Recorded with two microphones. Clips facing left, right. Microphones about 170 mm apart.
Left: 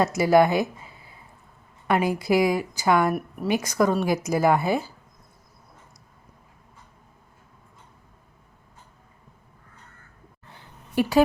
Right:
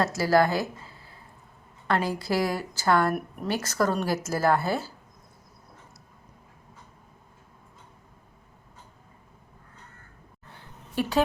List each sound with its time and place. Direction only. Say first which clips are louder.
0.0 s a woman's voice: left 4 dB; 20° left (ahead or behind)
3.1 s a woman's voice: left 3 dB; centre (ahead or behind)
3.5 s a woman's voice: left 4 dB; 15° left (ahead or behind)
11.0 s a woman's voice: left 5 dB; 10° left (ahead or behind)